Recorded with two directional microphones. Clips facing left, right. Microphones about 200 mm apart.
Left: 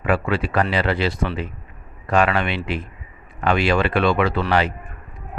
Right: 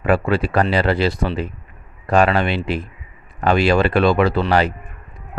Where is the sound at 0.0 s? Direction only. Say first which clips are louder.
Right 3 dB; 40° right (ahead or behind).